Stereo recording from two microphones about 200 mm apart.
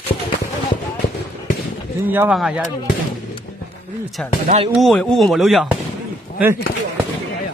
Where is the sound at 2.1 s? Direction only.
5° right (ahead or behind).